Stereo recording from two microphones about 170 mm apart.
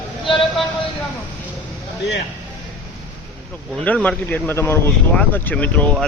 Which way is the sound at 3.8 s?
5° left (ahead or behind).